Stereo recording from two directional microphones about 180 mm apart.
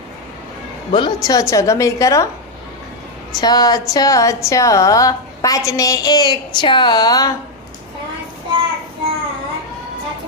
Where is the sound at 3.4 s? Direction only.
20° left (ahead or behind).